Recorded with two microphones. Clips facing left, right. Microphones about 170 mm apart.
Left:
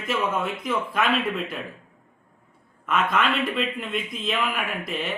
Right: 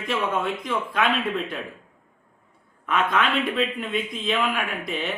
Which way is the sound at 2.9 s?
Centre (ahead or behind).